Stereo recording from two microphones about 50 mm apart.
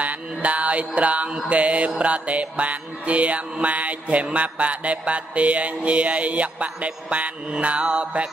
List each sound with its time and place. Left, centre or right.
0.0 s mantra: right